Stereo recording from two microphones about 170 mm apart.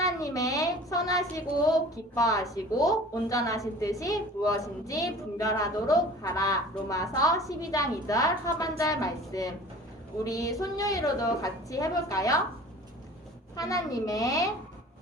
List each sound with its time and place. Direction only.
0.0 s a woman's voice: 20° left (ahead or behind)
13.6 s a woman's voice: 20° left (ahead or behind)